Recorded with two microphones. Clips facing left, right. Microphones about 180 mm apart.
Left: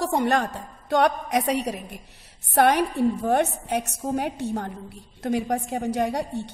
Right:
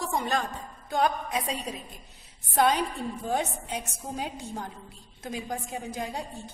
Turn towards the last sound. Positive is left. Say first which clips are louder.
# left 9 dB
turn(degrees=70)  # may be behind; listen again after turning